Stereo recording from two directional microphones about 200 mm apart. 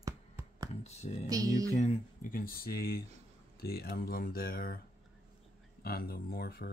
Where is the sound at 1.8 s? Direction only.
40° left (ahead or behind).